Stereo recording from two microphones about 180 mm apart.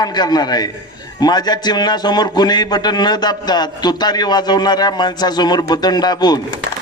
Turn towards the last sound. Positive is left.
turn(degrees=25)  # may be behind; listen again after turning